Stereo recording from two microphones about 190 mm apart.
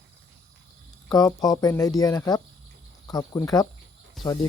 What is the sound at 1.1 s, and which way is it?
Speech, 20° left (ahead or behind).